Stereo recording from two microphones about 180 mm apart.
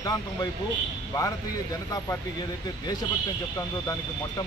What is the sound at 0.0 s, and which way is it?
Speech, 20° left (ahead or behind).